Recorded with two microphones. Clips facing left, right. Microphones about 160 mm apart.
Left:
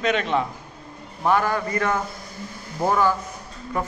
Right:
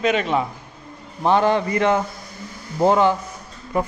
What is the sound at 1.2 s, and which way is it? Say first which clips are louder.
A man's voice: right 4 dB; 25° right (ahead or behind).